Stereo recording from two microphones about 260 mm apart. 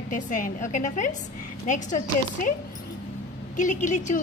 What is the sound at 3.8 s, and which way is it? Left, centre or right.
Speech, left.